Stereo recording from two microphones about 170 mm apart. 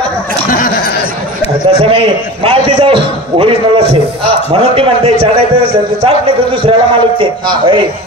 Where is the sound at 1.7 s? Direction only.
35° right (ahead or behind).